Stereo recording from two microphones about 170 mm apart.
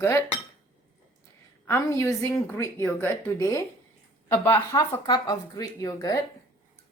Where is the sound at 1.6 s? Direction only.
15° left (ahead or behind).